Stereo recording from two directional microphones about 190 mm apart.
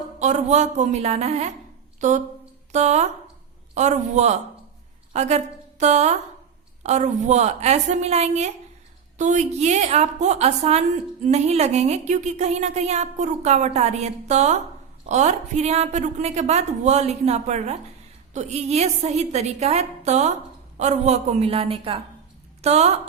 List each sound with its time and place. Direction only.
0.2 s a woman's voice: 35° right (ahead or behind)